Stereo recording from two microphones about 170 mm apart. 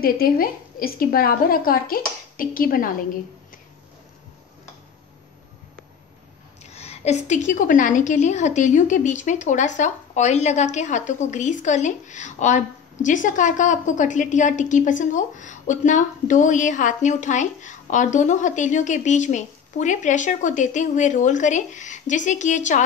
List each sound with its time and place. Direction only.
0.0 s a woman's voice: 60° left (ahead or behind)
6.6 s a woman's voice: 40° left (ahead or behind)